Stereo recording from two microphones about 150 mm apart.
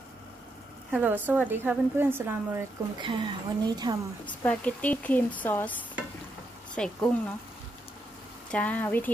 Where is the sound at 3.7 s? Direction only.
30° right (ahead or behind).